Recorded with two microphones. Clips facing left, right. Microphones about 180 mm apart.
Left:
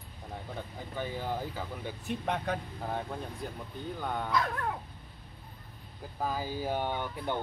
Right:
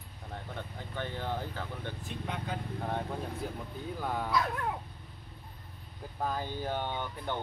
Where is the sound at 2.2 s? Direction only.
65° left (ahead or behind).